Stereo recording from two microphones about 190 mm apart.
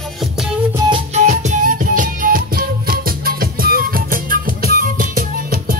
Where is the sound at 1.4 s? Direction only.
45° right (ahead or behind).